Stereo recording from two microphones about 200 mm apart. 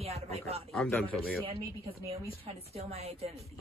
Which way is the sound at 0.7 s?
5° left (ahead or behind).